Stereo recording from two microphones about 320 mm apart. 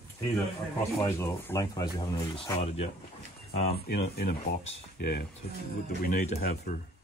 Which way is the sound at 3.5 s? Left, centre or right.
Left.